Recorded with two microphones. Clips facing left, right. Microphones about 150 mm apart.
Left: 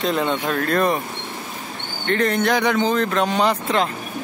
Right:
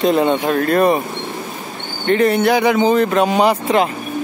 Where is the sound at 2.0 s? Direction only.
10° right (ahead or behind).